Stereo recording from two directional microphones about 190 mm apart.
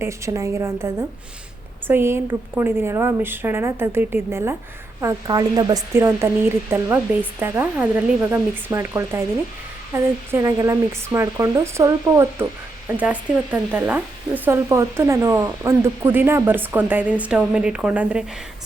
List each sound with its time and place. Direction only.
0.0 s speech: 15° right (ahead or behind)
1.9 s speech: 10° right (ahead or behind)